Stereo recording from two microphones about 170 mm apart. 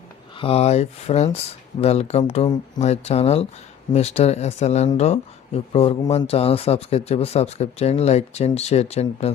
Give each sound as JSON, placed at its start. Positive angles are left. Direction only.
{"t": 0.3, "sound": "speech", "side_deg": 35}